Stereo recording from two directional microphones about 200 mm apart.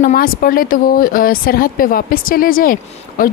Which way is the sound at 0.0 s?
45° left (ahead or behind).